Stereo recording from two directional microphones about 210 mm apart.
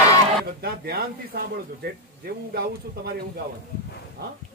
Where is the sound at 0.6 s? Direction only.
45° right (ahead or behind).